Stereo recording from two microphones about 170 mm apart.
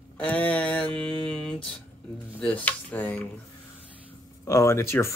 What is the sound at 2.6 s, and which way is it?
Speech, 10° left (ahead or behind).